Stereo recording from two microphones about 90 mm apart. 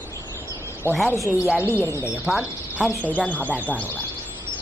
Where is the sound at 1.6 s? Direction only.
25° left (ahead or behind).